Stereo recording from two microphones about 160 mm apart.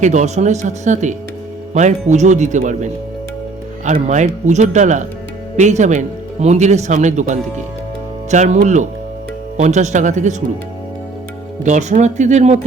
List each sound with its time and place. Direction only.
0.0 s speech: 45° right (ahead or behind)
4.1 s speech: 45° right (ahead or behind)
11.6 s speech: 50° right (ahead or behind)